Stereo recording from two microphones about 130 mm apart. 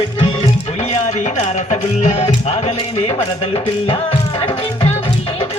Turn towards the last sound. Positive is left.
turn(degrees=45)  # may be behind; listen again after turning